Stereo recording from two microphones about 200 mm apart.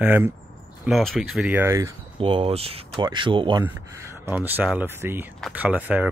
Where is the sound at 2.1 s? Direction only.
25° right (ahead or behind).